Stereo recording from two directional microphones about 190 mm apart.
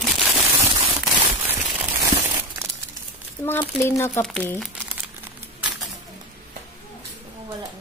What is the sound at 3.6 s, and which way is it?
Speech, 15° left (ahead or behind).